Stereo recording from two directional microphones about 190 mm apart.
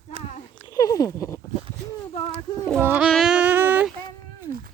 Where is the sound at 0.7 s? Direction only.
20° left (ahead or behind).